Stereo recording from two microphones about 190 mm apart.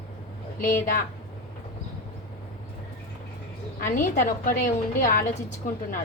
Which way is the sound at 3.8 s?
45° left (ahead or behind).